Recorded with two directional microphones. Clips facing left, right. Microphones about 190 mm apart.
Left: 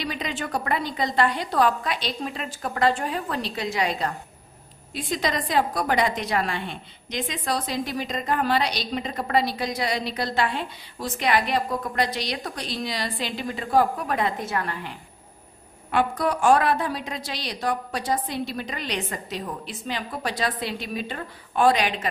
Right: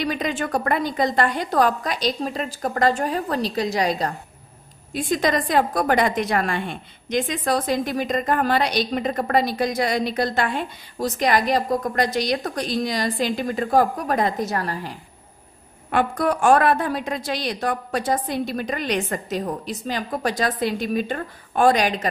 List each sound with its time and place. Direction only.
0.0 s a woman's voice: 50° right (ahead or behind)
4.9 s a woman's voice: 50° right (ahead or behind)
15.9 s a woman's voice: 50° right (ahead or behind)